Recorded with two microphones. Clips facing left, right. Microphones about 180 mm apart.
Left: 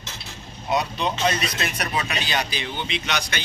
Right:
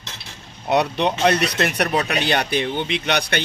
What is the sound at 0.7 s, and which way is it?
Speech, 65° right (ahead or behind).